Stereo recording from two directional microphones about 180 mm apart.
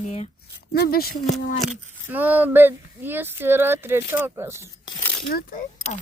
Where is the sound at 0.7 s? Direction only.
55° left (ahead or behind).